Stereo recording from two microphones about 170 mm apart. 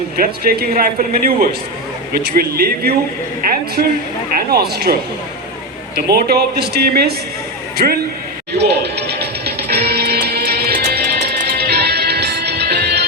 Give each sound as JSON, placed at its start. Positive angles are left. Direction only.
{"t": 0.2, "sound": "speech", "side_deg": -60}
{"t": 6.1, "sound": "speech", "side_deg": -70}
{"t": 8.5, "sound": "music", "side_deg": -80}